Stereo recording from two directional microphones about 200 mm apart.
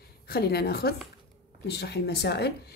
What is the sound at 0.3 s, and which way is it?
Speech, 55° left (ahead or behind).